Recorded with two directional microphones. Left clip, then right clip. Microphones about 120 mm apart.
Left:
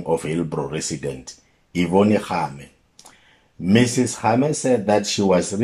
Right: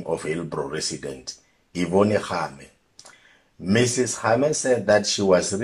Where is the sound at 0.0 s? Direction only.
20° left (ahead or behind).